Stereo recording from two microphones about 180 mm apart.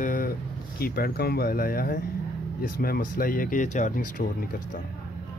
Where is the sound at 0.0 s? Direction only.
50° left (ahead or behind).